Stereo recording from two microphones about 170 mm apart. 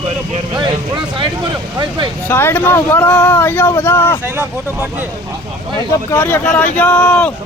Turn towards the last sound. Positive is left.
turn(degrees=5)  # may be behind; listen again after turning